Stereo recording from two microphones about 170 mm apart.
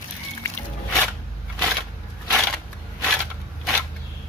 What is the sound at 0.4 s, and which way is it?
Music, 10° left (ahead or behind).